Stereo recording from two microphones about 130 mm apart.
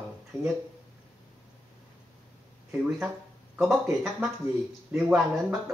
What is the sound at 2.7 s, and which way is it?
Speech, 10° right (ahead or behind).